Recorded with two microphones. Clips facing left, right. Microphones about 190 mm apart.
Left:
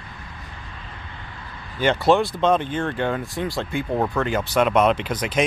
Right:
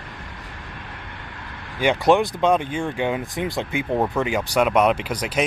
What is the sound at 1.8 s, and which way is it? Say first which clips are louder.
Speech: right 1 dB; 15° right (ahead or behind).